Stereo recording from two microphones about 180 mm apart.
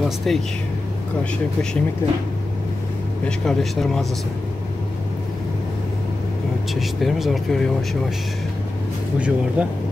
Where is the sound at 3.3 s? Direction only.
5° left (ahead or behind).